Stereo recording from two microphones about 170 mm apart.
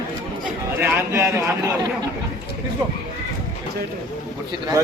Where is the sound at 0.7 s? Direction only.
10° right (ahead or behind).